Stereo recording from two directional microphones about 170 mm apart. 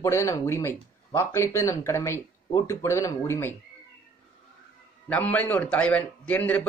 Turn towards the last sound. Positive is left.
turn(degrees=10)  # may be behind; listen again after turning